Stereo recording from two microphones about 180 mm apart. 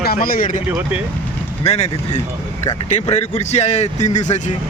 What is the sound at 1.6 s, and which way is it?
Speech, 35° left (ahead or behind).